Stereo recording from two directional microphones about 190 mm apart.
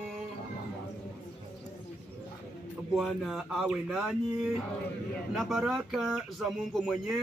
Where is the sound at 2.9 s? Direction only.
Centre (ahead or behind).